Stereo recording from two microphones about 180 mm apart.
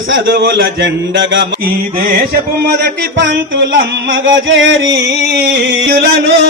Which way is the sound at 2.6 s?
70° right (ahead or behind).